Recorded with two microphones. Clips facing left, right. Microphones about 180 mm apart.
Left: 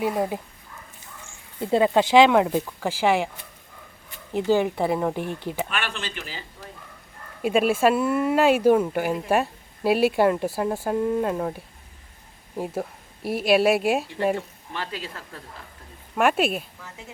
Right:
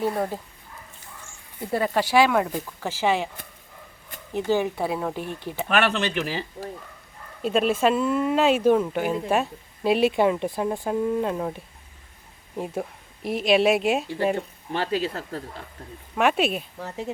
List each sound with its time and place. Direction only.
0.0 s speech: 15° left (ahead or behind)
1.6 s speech: 20° left (ahead or behind)
4.4 s speech: 15° left (ahead or behind)
5.6 s speech: 65° right (ahead or behind)
7.4 s speech: 10° left (ahead or behind)
14.7 s speech: 30° right (ahead or behind)
16.1 s speech: 5° left (ahead or behind)
16.7 s speech: 40° right (ahead or behind)